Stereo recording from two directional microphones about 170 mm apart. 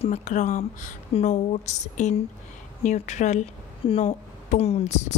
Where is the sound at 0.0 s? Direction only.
40° left (ahead or behind).